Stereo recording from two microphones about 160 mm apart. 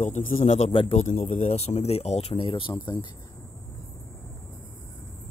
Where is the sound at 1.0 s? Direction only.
55° left (ahead or behind); by 3.1 s 30° left (ahead or behind).